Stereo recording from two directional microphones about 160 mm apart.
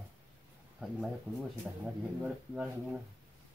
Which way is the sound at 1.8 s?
10° right (ahead or behind).